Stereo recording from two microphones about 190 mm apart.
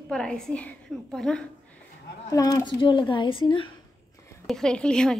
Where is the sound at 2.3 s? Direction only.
15° left (ahead or behind).